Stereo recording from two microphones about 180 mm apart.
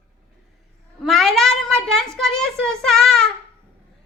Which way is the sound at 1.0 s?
Centre (ahead or behind).